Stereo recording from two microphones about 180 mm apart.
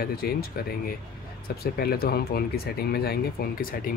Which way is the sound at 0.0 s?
55° left (ahead or behind).